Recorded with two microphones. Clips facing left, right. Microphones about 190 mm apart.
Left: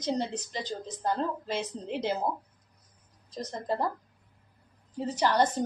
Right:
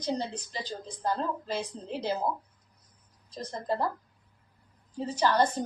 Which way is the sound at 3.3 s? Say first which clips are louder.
Even; 20° left (ahead or behind).